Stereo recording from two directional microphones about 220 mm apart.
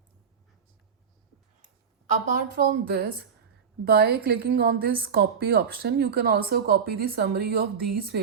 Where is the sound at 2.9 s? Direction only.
45° right (ahead or behind).